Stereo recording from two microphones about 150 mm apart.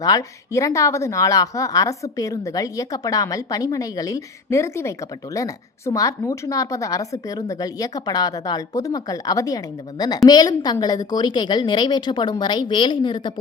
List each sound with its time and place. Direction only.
0.0 s speech: 25° left (ahead or behind)